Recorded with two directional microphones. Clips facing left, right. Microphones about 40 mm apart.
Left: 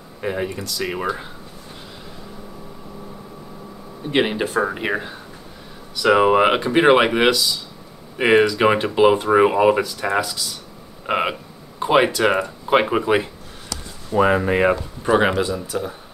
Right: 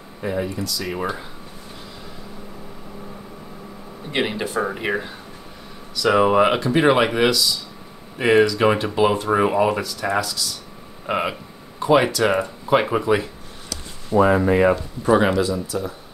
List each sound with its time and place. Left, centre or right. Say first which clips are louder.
0.2 s speech: even; left
4.1 s speech: left 4 dB; centre
14.4 s speech: right 1 dB; centre